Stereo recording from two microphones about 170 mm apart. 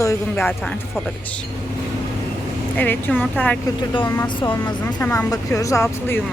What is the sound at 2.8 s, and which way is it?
Speech, 10° left (ahead or behind).